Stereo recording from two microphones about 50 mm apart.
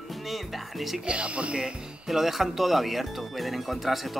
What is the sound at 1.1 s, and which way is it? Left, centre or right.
Speech, right.